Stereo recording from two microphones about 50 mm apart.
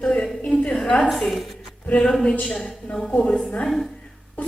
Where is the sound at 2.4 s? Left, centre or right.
Centre.